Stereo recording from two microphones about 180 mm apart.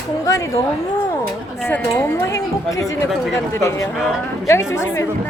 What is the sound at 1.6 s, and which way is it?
Speech, 10° left (ahead or behind).